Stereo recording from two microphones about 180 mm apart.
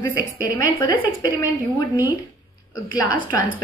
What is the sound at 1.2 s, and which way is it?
Speech, 20° left (ahead or behind).